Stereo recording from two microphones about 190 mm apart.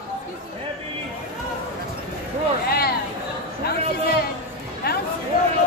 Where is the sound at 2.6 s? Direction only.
55° left (ahead or behind).